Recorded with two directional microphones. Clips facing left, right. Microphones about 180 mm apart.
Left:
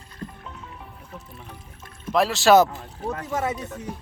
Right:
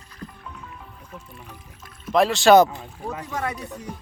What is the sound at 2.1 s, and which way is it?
Speech, centre (ahead or behind).